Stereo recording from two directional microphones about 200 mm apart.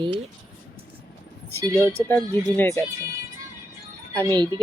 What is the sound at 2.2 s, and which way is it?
Speech, 20° right (ahead or behind).